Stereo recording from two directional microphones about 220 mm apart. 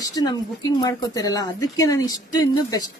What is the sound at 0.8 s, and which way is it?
Speech, 15° left (ahead or behind).